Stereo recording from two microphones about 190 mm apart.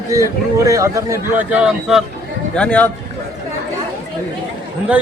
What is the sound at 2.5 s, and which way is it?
Speech, 5° left (ahead or behind).